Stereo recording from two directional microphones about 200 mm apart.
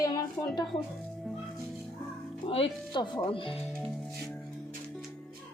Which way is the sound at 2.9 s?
20° left (ahead or behind).